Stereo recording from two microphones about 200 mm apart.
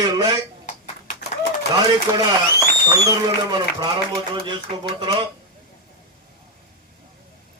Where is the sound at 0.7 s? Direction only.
35° left (ahead or behind).